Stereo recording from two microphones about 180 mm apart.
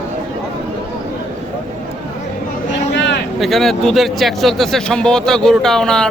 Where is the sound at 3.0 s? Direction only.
80° left.